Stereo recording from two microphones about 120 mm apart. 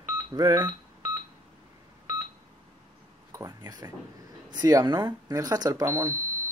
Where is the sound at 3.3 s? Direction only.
25° right (ahead or behind).